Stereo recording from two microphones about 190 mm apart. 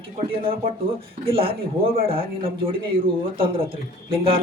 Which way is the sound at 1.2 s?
30° right (ahead or behind).